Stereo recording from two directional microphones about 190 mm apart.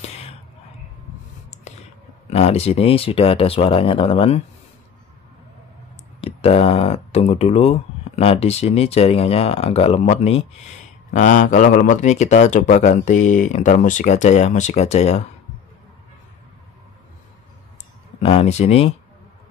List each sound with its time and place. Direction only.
1.5 s a sound: 40° left (ahead or behind)
2.2 s speech: 35° left (ahead or behind)
6.2 s speech: 30° left (ahead or behind)
18.2 s speech: 30° left (ahead or behind)